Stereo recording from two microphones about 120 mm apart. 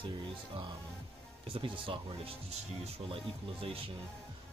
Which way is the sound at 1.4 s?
45° right (ahead or behind).